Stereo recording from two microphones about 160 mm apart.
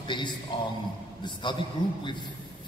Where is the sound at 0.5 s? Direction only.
25° left (ahead or behind).